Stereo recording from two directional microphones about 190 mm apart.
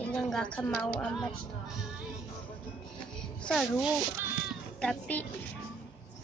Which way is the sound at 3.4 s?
Centre (ahead or behind).